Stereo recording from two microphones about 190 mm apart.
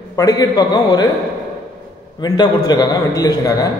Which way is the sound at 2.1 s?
20° left (ahead or behind).